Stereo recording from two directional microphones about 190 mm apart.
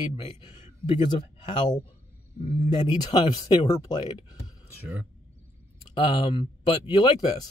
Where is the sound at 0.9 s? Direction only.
25° left (ahead or behind).